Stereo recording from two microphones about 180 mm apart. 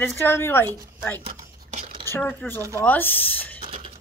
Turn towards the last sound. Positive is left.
turn(degrees=10)  # may be behind; listen again after turning